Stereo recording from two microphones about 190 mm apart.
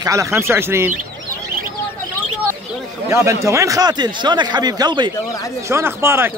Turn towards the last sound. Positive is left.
turn(degrees=-15)  # may be behind; listen again after turning